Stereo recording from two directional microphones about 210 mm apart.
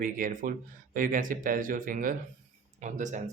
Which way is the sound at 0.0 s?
40° right (ahead or behind).